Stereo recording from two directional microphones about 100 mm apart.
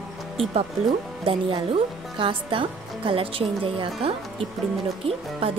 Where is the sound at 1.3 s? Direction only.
60° right (ahead or behind).